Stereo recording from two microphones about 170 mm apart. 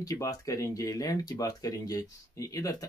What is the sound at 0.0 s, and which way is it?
Speech, 20° left (ahead or behind).